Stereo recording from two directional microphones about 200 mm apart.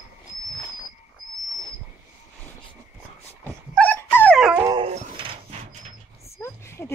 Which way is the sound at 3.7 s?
10° left (ahead or behind).